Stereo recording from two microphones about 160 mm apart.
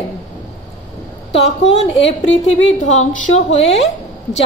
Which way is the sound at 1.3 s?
40° left (ahead or behind).